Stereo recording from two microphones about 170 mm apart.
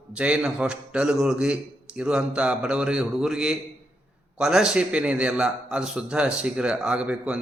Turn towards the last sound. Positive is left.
turn(degrees=-5)  # may be behind; listen again after turning